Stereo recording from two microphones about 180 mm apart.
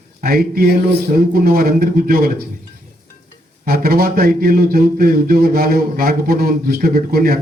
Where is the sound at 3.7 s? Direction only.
55° right (ahead or behind).